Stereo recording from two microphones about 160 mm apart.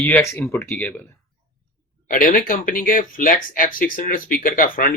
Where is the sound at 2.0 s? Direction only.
60° left (ahead or behind).